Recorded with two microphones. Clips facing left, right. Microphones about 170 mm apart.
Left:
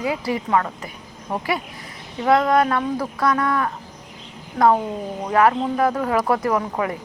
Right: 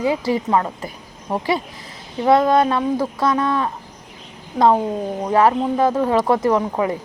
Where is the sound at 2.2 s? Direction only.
25° right (ahead or behind).